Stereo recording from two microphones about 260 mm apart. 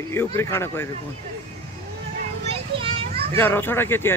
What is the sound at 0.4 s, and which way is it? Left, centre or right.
Speech, centre.